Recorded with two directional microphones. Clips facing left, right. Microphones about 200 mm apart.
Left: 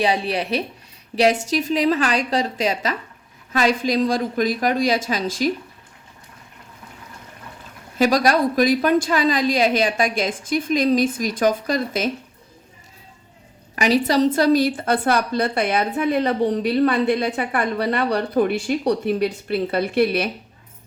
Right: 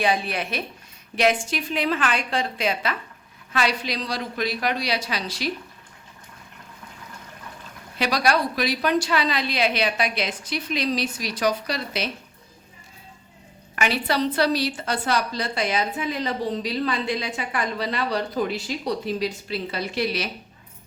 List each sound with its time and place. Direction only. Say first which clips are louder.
0.0 s a woman's voice: left 3 dB; 35° left (ahead or behind)
7.9 s a woman's voice: left 5 dB; 45° left (ahead or behind)
13.7 s a woman's voice: left 6 dB; 40° left (ahead or behind); by 20.3 s 55° left (ahead or behind)